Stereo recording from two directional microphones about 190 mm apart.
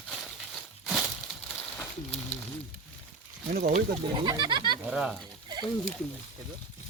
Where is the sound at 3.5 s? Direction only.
50° right (ahead or behind).